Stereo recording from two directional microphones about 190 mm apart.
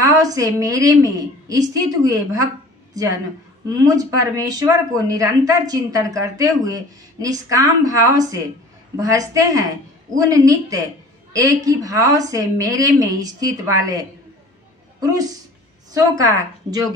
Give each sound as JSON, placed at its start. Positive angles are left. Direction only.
{"t": 0.0, "sound": "a woman's voice", "side_deg": -20}